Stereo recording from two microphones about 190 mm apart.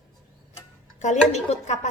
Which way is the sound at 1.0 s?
35° left (ahead or behind).